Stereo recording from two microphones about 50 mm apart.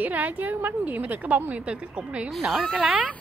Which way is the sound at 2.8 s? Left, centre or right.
Right.